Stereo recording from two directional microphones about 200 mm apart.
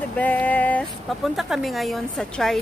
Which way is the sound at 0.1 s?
10° left (ahead or behind).